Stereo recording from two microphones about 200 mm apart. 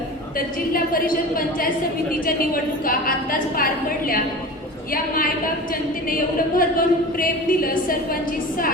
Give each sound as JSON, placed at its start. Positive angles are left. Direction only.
{"t": 0.3, "sound": "a woman's voice", "side_deg": 45}
{"t": 2.2, "sound": "a woman's voice", "side_deg": 45}
{"t": 6.1, "sound": "a woman's voice", "side_deg": 45}